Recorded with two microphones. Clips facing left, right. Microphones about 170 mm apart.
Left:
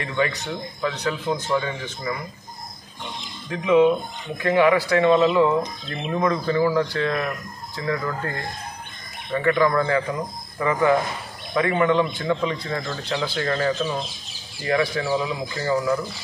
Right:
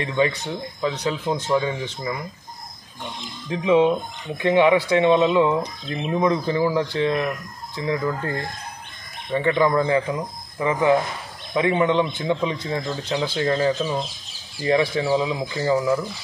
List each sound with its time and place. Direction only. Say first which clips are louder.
0.0 s a man's voice: right 3 dB; 20° right (ahead or behind)
3.4 s a man's voice: left 1 dB; 25° right (ahead or behind)
9.3 s a man's voice: right 1 dB; 20° right (ahead or behind)